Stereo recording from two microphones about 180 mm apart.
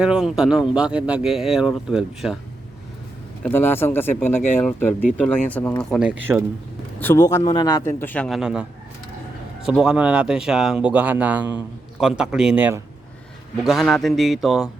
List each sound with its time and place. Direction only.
0.0 s speech: 5° right (ahead or behind)
3.4 s speech: 10° left (ahead or behind)
7.0 s speech: 15° left (ahead or behind); by 8.6 s 5° right (ahead or behind)
9.6 s speech: 5° right (ahead or behind)